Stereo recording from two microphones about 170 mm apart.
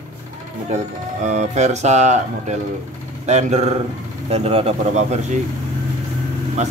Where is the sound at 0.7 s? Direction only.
45° right (ahead or behind).